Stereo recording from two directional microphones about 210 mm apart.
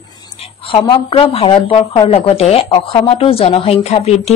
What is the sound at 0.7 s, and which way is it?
Speech, 25° left (ahead or behind).